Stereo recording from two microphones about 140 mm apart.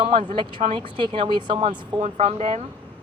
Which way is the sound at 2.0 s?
55° right (ahead or behind).